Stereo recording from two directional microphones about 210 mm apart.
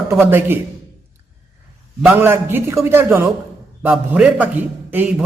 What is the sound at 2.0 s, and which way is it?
A man's voice, 10° right (ahead or behind).